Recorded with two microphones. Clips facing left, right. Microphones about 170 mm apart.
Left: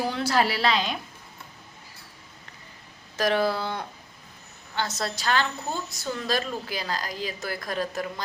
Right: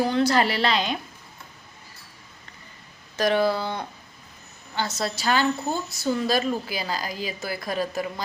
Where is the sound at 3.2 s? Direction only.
Centre (ahead or behind).